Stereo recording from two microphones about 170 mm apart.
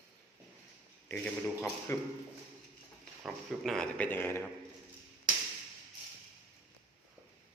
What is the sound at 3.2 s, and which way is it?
Speech, 5° left (ahead or behind).